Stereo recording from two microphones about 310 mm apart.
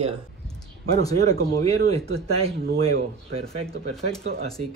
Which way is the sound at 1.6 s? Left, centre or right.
Centre.